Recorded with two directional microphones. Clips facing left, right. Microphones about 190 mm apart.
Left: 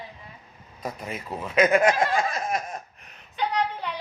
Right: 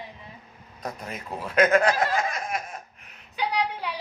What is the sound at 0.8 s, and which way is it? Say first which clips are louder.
Speech: left 2 dB; 5° left (ahead or behind).